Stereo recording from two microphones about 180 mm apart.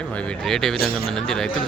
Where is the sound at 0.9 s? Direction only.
60° left (ahead or behind).